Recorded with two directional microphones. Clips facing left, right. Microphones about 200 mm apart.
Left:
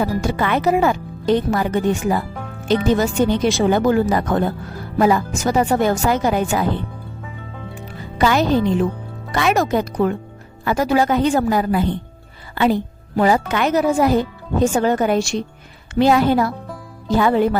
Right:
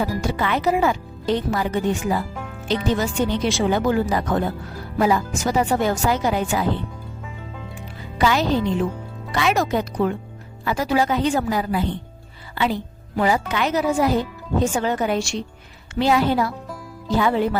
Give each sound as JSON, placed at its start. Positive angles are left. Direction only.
{"t": 0.3, "sound": "speech", "side_deg": 50}
{"t": 8.2, "sound": "speech", "side_deg": 50}